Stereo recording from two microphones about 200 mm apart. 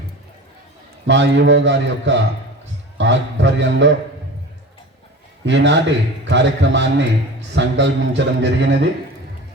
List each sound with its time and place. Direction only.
1.0 s a man's voice: 65° right (ahead or behind)
5.5 s a man's voice: 65° right (ahead or behind)